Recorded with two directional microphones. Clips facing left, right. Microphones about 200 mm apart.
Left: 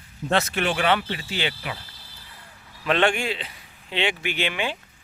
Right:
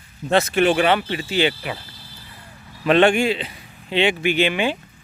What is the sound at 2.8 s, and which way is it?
Speech, 10° right (ahead or behind).